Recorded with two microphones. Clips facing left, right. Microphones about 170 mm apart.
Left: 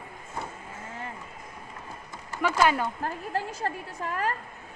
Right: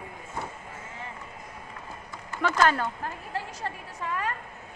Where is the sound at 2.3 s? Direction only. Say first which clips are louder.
Even; 10° left (ahead or behind).